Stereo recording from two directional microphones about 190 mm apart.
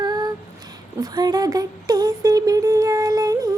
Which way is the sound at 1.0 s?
20° right (ahead or behind).